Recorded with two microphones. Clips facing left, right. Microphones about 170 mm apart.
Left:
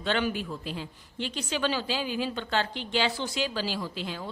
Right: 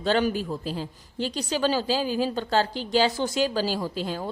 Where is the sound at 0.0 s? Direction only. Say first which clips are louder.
Right 5 dB; 40° right (ahead or behind).